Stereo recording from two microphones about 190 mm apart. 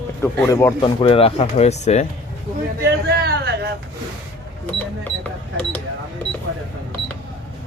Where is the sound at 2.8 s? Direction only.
60° right (ahead or behind).